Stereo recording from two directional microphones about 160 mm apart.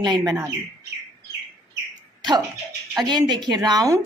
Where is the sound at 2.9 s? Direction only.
25° right (ahead or behind).